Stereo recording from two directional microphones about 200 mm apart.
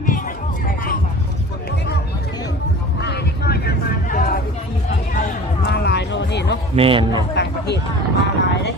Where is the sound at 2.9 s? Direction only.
55° left (ahead or behind).